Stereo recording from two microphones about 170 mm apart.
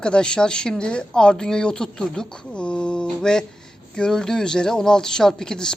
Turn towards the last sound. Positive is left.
turn(degrees=5)  # may be behind; listen again after turning